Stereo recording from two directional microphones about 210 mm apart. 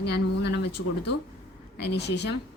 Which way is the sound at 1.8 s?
55° left (ahead or behind).